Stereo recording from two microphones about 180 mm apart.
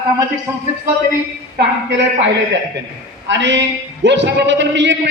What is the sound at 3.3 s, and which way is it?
A man's voice, 80° right.